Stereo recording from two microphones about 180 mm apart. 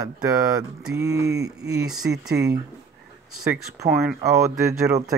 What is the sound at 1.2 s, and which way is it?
Speech, 65° right (ahead or behind).